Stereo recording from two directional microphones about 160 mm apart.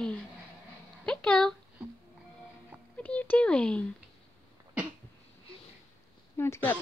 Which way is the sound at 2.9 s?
10° left (ahead or behind).